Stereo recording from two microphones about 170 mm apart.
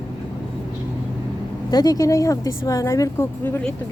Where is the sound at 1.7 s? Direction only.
25° left (ahead or behind).